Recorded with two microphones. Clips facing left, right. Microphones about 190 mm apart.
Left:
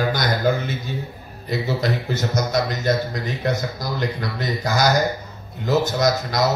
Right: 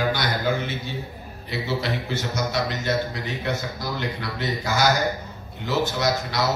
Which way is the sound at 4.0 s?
40° left (ahead or behind).